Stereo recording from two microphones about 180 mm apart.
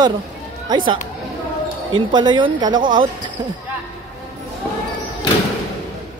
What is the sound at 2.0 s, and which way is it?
Speech, 25° right (ahead or behind).